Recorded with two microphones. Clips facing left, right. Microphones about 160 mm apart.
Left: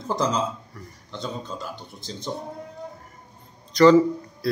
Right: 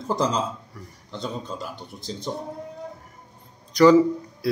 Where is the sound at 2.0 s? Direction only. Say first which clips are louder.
Right 3 dB; 35° right (ahead or behind).